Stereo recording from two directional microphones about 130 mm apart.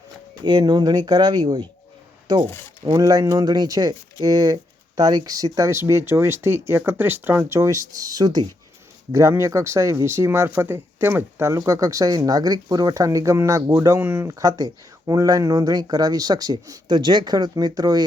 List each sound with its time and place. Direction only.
0.4 s speech: 35° right (ahead or behind)